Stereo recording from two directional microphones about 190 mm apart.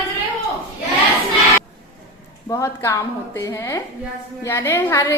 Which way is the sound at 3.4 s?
15° left (ahead or behind).